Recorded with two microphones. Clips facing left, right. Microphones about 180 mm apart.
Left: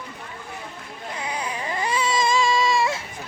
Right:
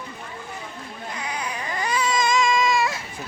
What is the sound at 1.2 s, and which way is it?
Baby cry, 30° left (ahead or behind).